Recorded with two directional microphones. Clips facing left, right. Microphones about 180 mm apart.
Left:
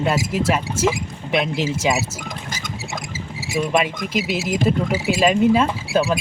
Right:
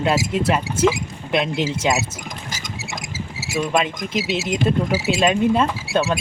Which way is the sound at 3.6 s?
5° left (ahead or behind).